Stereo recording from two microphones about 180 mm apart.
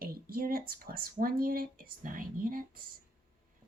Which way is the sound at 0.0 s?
55° right (ahead or behind).